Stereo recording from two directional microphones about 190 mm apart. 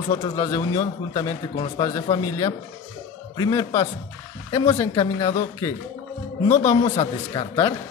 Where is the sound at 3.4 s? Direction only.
15° left (ahead or behind).